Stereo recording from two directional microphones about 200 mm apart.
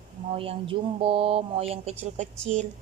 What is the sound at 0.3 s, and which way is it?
A woman's voice, 25° right (ahead or behind).